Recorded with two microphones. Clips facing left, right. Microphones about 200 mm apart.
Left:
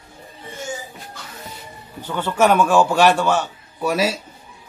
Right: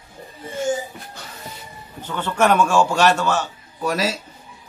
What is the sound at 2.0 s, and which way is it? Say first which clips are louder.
A man's voice: left 2 dB; 10° left (ahead or behind).